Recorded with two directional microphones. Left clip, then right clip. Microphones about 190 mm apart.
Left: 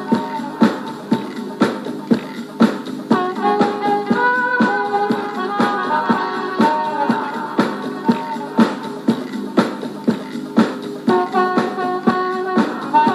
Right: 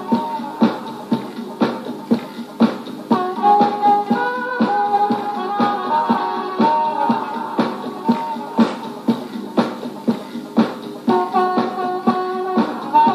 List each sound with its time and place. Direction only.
0.1 s music: 45° left (ahead or behind)